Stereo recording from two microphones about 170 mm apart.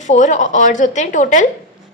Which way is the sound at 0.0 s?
45° left (ahead or behind).